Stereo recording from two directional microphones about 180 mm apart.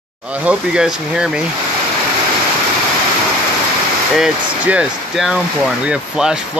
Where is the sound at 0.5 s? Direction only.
5° right (ahead or behind).